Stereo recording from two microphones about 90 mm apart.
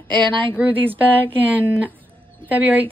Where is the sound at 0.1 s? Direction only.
60° right (ahead or behind).